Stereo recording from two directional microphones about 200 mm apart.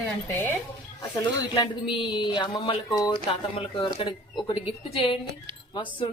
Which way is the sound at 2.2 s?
25° left (ahead or behind).